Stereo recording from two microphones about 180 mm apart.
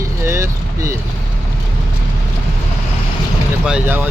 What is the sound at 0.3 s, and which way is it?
Vehicle, 15° right (ahead or behind).